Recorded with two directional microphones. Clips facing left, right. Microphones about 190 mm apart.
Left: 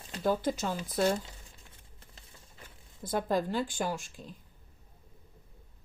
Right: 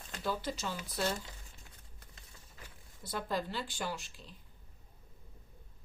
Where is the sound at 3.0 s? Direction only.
45° left (ahead or behind).